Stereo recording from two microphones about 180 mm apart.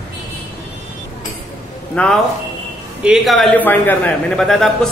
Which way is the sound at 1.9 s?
5° left (ahead or behind).